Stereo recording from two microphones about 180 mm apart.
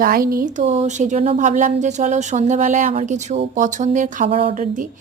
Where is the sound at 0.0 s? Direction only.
55° right (ahead or behind).